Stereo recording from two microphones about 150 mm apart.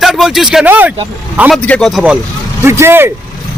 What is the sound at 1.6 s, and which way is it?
Speech, 5° left (ahead or behind).